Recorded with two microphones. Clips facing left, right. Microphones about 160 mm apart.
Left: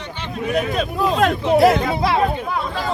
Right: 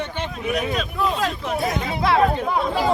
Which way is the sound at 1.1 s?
70° left (ahead or behind).